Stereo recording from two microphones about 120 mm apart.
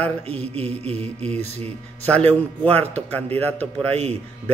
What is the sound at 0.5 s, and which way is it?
Speech, 65° right (ahead or behind).